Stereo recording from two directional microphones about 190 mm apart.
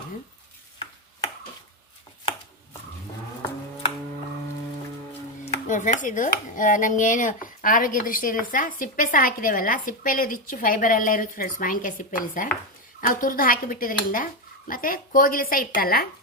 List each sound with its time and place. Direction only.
5.6 s speech: 40° left (ahead or behind)